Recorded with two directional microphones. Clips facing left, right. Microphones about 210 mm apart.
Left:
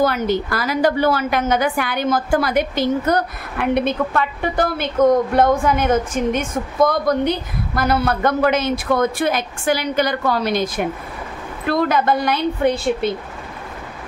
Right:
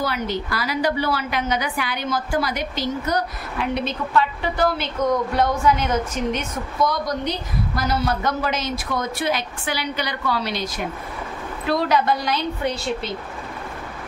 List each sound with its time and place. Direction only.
0.0 s a woman's voice: 50° left (ahead or behind)